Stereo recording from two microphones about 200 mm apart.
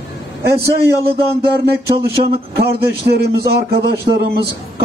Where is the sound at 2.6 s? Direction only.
50° right (ahead or behind).